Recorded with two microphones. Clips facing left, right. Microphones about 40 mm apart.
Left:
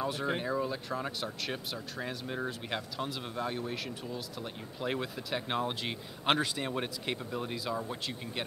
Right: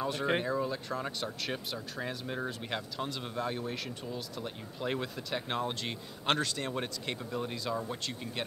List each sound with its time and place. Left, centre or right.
0.0 s speech: centre